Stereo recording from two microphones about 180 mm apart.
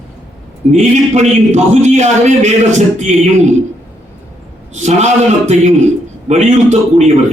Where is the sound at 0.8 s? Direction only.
40° right (ahead or behind).